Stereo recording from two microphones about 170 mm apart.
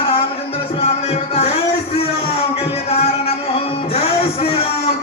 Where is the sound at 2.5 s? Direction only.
35° left (ahead or behind).